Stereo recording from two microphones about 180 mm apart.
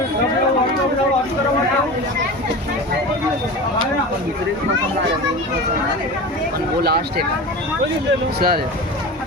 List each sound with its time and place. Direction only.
6.8 s speech: 60° right (ahead or behind)
8.4 s speech: 60° right (ahead or behind)